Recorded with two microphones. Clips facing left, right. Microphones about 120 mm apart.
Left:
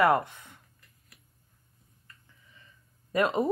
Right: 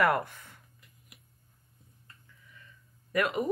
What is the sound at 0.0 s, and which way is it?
Speech, 20° left (ahead or behind).